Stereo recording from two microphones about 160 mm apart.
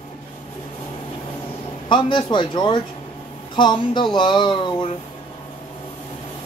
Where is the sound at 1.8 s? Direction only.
30° left (ahead or behind).